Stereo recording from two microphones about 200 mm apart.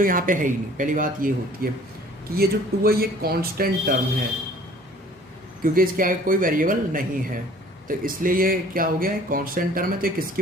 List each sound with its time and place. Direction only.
0.0 s speech: 45° right (ahead or behind)
5.7 s speech: 45° right (ahead or behind)